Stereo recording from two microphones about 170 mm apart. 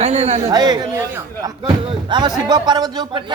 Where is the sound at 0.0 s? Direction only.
40° right (ahead or behind).